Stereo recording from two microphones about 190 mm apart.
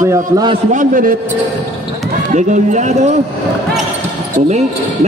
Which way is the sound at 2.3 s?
40° right (ahead or behind).